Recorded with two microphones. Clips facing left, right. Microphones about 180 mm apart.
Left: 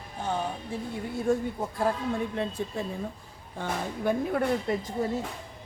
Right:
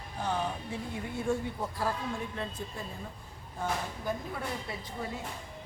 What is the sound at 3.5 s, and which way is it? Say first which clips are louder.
A woman's voice: left 2 dB; 65° left (ahead or behind).